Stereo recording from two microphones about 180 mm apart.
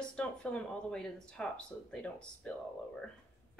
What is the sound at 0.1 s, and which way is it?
Speech, 5° left (ahead or behind).